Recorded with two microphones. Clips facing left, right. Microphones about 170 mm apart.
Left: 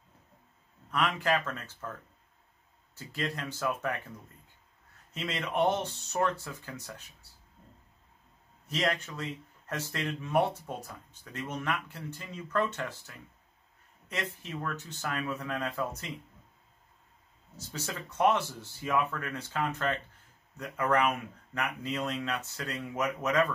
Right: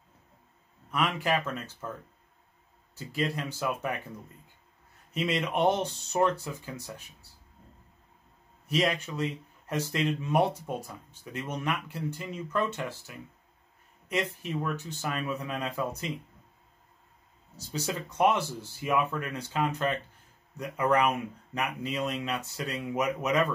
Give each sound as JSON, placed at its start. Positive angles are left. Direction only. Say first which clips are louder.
{"t": 0.9, "sound": "speech", "louder": "right 1 dB", "side_deg": -15}
{"t": 3.1, "sound": "speech", "louder": "right 4 dB", "side_deg": -10}
{"t": 5.1, "sound": "speech", "louder": "right 4 dB", "side_deg": -15}
{"t": 8.6, "sound": "speech", "louder": "right 3 dB", "side_deg": -15}
{"t": 17.7, "sound": "speech", "louder": "right 4 dB", "side_deg": -15}